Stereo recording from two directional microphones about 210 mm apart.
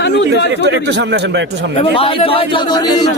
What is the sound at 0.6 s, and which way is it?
Speech, 55° right (ahead or behind).